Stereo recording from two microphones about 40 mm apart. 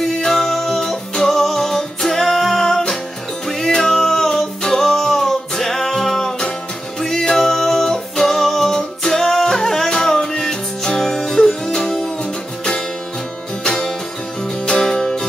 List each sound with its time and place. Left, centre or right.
0.2 s music: centre
13.7 s music: centre